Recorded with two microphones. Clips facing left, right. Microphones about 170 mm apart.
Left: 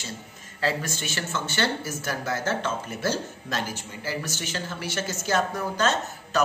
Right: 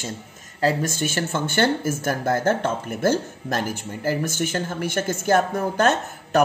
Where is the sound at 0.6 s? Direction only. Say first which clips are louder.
Right 6 dB; 45° right (ahead or behind).